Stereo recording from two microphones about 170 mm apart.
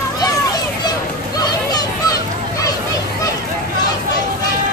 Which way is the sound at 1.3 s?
20° left (ahead or behind).